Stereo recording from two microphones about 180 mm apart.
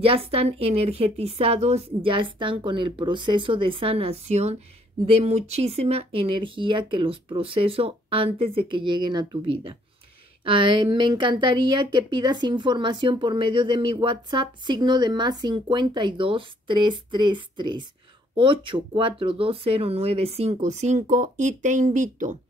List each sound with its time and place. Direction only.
0.0 s a woman's voice: 30° right (ahead or behind)